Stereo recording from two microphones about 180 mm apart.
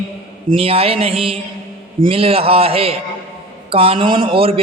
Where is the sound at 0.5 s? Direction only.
30° right (ahead or behind).